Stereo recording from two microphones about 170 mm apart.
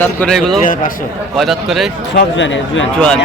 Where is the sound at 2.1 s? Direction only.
90° left.